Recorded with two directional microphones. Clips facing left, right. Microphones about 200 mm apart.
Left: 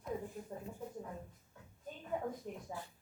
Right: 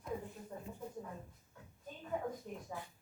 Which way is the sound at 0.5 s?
25° left (ahead or behind).